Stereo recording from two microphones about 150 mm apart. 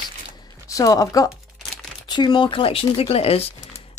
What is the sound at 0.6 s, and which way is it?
Speech, 20° left (ahead or behind).